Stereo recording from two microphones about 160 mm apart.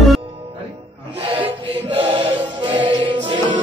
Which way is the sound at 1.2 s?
40° right (ahead or behind).